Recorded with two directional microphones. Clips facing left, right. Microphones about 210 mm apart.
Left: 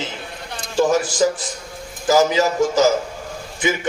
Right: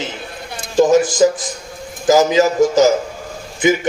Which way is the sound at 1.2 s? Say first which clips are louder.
Right 5 dB; 20° right (ahead or behind).